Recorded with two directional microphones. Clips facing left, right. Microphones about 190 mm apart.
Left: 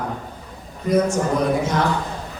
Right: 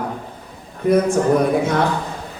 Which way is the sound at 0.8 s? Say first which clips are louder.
Right 3 dB; 55° right (ahead or behind).